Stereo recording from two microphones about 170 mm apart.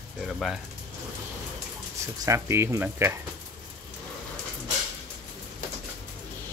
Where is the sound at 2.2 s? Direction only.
15° right (ahead or behind).